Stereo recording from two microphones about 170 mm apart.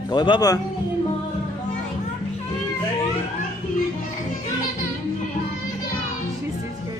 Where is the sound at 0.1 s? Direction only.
25° left (ahead or behind).